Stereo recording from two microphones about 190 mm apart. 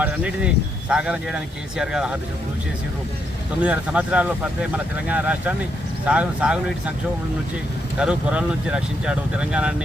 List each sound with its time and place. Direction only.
0.0 s speech: 5° right (ahead or behind)
3.6 s speech: 5° right (ahead or behind)
7.9 s speech: 5° right (ahead or behind)